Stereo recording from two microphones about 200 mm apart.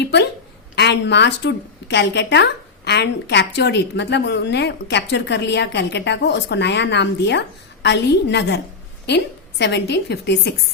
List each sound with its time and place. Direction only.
0.0 s a woman's voice: 60° left (ahead or behind)